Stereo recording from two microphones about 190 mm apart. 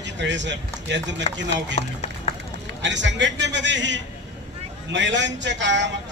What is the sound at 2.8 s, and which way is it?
A man's voice, 70° right (ahead or behind).